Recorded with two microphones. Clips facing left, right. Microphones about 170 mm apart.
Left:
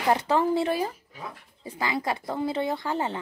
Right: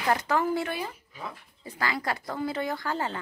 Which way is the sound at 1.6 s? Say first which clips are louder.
Left 2 dB; 15° left (ahead or behind).